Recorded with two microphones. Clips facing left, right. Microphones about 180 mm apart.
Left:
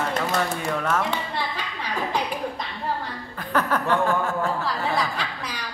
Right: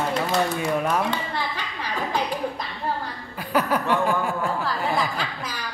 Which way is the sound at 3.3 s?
10° right (ahead or behind).